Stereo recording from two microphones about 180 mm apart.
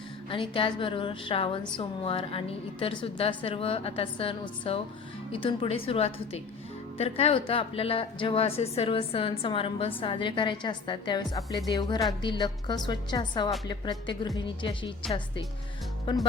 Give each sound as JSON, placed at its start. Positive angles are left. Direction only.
{"t": 0.3, "sound": "a woman's voice", "side_deg": 30}
{"t": 16.1, "sound": "a woman's voice", "side_deg": 25}